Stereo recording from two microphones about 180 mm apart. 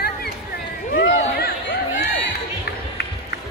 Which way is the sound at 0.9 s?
75° left (ahead or behind).